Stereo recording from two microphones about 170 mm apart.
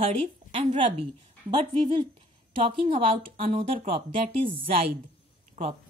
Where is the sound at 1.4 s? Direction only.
30° right (ahead or behind).